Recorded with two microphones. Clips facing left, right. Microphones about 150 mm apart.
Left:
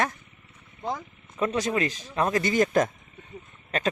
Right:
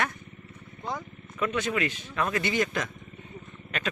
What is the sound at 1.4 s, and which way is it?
Speech, 35° left (ahead or behind).